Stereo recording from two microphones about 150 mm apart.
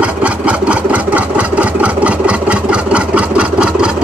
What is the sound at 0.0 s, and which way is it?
Engine, 10° right (ahead or behind).